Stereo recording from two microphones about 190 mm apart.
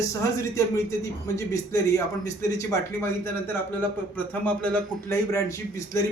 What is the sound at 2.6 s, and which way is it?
A man's voice, 10° left (ahead or behind).